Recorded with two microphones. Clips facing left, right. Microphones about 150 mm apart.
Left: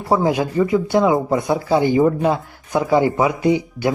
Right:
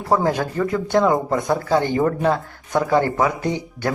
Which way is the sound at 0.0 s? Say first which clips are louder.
Left 2 dB; 10° left (ahead or behind).